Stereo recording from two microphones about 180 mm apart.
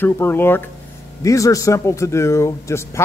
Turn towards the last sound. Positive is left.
turn(degrees=15)  # may be behind; listen again after turning